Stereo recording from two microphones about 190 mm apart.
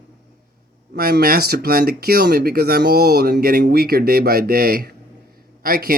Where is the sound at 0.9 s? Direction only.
55° right (ahead or behind).